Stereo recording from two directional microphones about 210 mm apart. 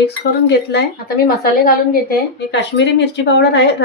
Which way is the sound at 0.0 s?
55° left (ahead or behind).